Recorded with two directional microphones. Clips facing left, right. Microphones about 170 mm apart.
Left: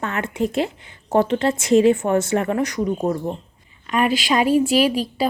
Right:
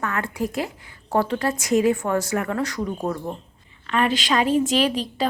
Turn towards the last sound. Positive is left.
turn(degrees=10)  # may be behind; listen again after turning